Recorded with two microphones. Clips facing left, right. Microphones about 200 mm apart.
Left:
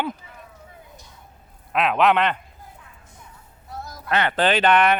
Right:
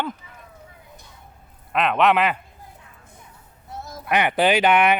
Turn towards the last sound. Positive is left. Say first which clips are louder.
# even
turn(degrees=-10)  # may be behind; listen again after turning